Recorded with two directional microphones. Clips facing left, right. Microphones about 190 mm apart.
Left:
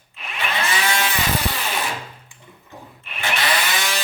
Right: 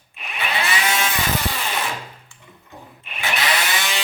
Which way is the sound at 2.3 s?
15° left (ahead or behind).